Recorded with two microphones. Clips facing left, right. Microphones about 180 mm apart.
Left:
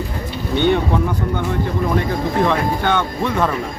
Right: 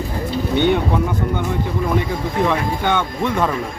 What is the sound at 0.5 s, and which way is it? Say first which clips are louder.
Speech: left 1 dB; 15° right (ahead or behind).